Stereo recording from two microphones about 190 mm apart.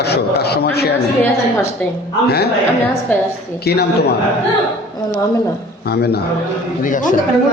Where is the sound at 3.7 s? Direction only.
55° left (ahead or behind).